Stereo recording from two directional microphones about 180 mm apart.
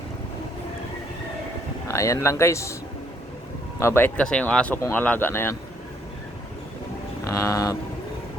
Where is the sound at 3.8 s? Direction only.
10° left (ahead or behind).